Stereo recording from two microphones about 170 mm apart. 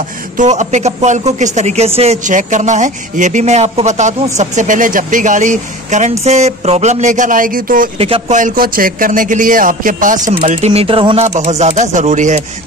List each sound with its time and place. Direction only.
0.4 s speech: 45° right (ahead or behind)
8.0 s speech: 35° right (ahead or behind)
8.4 s speech: 55° right (ahead or behind)